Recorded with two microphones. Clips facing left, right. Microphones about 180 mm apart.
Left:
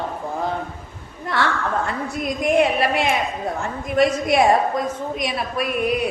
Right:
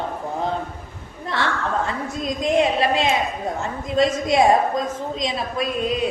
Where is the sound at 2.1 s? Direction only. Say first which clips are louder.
Left 1 dB; 20° right (ahead or behind).